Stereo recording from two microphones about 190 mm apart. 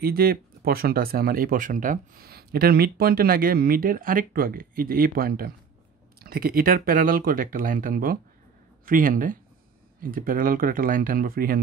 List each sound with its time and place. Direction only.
0.0 s speech: 50° right (ahead or behind)